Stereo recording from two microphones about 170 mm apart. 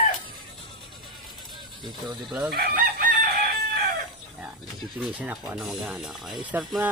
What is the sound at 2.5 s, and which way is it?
Chicken, 60° right (ahead or behind).